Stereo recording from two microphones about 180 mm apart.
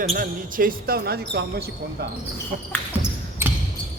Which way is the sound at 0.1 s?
50° right (ahead or behind).